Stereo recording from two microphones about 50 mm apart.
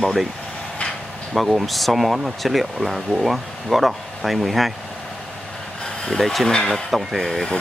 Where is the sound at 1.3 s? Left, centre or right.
Centre.